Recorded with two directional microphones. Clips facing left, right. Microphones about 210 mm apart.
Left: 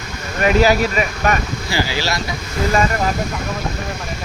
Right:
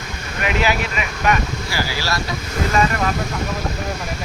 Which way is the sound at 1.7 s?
20° left (ahead or behind).